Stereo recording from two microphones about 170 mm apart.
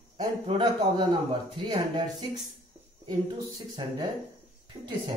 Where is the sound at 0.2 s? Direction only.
30° right (ahead or behind).